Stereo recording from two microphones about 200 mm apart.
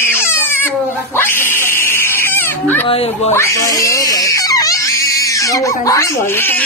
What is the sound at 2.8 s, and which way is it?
Speech, 30° left (ahead or behind).